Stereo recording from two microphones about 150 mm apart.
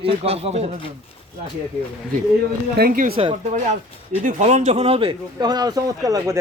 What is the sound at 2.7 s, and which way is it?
Speech, 90° right.